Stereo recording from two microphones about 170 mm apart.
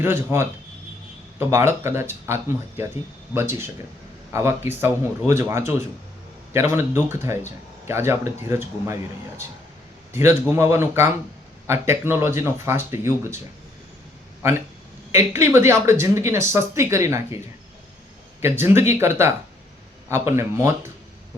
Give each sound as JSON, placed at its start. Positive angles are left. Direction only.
{"t": 0.0, "sound": "speech", "side_deg": -15}
{"t": 10.1, "sound": "a man's voice", "side_deg": -15}
{"t": 15.1, "sound": "speech", "side_deg": -15}
{"t": 18.4, "sound": "speech", "side_deg": -15}